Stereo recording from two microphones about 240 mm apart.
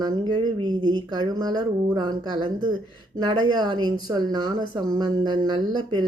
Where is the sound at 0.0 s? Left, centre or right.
Centre.